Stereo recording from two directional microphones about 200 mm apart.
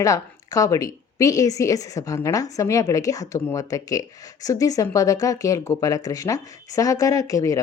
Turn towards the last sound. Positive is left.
turn(degrees=15)  # may be behind; listen again after turning